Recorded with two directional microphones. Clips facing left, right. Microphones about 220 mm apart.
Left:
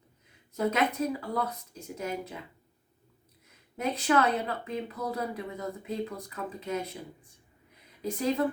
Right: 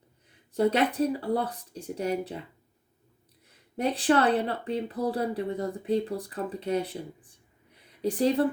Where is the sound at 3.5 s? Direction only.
30° right (ahead or behind).